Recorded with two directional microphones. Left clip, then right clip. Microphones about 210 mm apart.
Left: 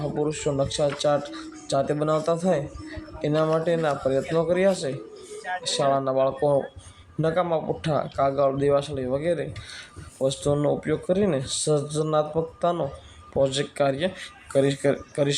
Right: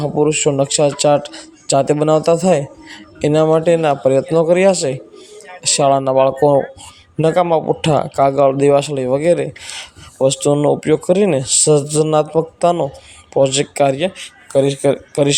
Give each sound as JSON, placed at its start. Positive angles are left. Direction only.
{"t": 0.0, "sound": "speech", "side_deg": -35}